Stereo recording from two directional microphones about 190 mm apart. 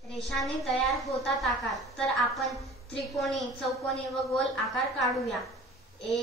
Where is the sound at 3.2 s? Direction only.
Centre (ahead or behind).